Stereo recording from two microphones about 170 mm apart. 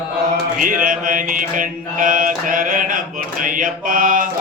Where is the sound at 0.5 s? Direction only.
55° right (ahead or behind).